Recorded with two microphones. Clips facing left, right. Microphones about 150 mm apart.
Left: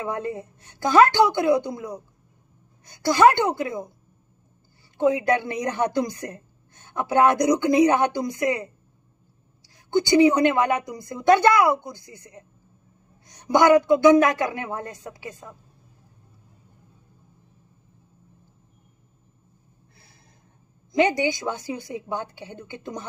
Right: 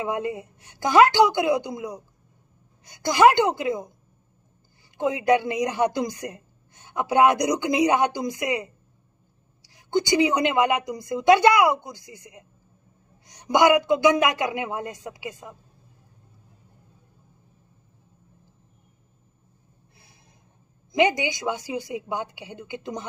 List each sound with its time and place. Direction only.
0.0 s speech: 15° right (ahead or behind)
4.9 s speech: 15° right (ahead or behind)
9.9 s speech: 20° right (ahead or behind)
21.2 s speech: 15° right (ahead or behind)